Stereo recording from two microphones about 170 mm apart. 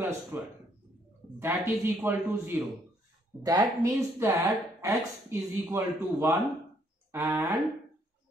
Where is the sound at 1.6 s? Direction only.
10° right (ahead or behind).